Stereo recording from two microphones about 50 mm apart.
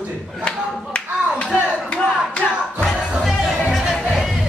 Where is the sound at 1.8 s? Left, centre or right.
Left.